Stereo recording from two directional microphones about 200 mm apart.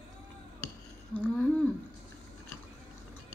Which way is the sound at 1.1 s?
10° left (ahead or behind).